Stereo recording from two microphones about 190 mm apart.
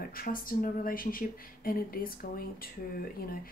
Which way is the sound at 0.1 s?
50° left (ahead or behind).